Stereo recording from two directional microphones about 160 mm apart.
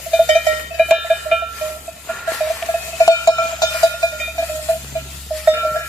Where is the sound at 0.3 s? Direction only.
Centre (ahead or behind).